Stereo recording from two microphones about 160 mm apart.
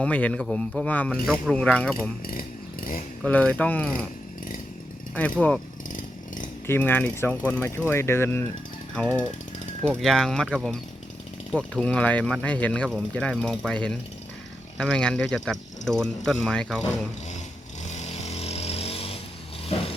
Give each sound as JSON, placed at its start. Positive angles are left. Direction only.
{"t": 0.0, "sound": "speech", "side_deg": 10}
{"t": 3.2, "sound": "speech", "side_deg": 10}
{"t": 5.1, "sound": "speech", "side_deg": 10}
{"t": 5.9, "sound": "chainsaw", "side_deg": 55}
{"t": 6.7, "sound": "speech", "side_deg": 10}
{"t": 17.8, "sound": "vehicle", "side_deg": 45}
{"t": 19.7, "sound": "a sound", "side_deg": 40}